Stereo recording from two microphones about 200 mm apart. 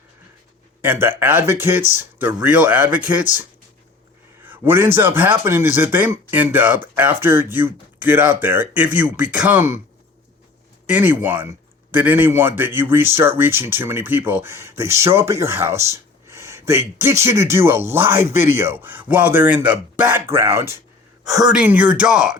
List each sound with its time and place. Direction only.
0.8 s a man's voice: 10° right (ahead or behind)
4.4 s a man's voice: 10° right (ahead or behind)
10.8 s a man's voice: 10° right (ahead or behind)
21.5 s speech: 5° right (ahead or behind)